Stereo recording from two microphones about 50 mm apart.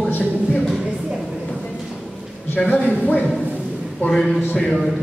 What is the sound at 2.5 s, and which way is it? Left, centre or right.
Speech, left.